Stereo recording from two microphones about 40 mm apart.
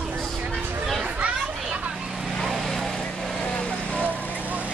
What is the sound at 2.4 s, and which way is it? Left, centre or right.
Vehicle, centre.